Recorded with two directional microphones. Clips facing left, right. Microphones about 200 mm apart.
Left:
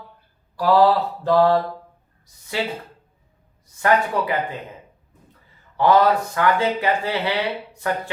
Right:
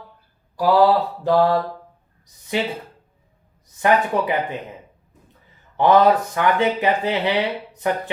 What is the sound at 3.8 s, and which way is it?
Speech, 20° right (ahead or behind).